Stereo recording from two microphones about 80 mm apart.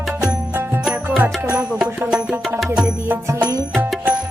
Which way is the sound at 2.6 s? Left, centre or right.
Centre.